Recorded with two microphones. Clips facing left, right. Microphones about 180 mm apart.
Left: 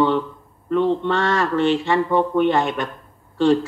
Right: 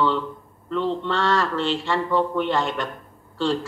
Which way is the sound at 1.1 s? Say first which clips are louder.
Left 3 dB; 15° left (ahead or behind).